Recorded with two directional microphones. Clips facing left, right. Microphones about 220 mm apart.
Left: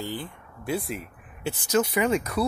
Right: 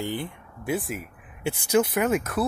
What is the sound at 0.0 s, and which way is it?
Speech, 20° right (ahead or behind).